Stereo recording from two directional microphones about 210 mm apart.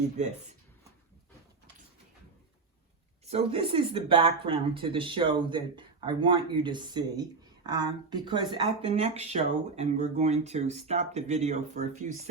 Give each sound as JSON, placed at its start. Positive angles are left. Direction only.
{"t": 0.2, "sound": "speech", "side_deg": -35}
{"t": 3.2, "sound": "speech", "side_deg": -30}